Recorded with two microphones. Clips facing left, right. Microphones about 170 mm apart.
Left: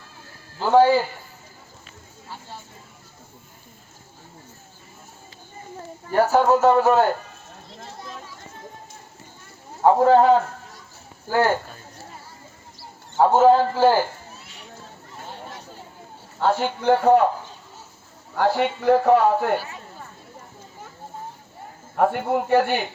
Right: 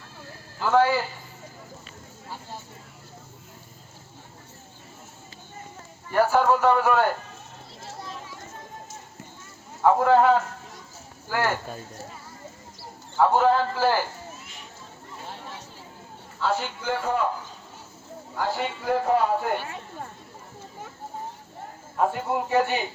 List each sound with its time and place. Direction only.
0.6 s a man's voice: 30° left (ahead or behind)
6.1 s a man's voice: 35° left (ahead or behind)
9.8 s a man's voice: 30° left (ahead or behind)
13.1 s a man's voice: 35° left (ahead or behind)
16.4 s a man's voice: 55° left (ahead or behind)
18.3 s a man's voice: 65° left (ahead or behind)
21.9 s a man's voice: 65° left (ahead or behind)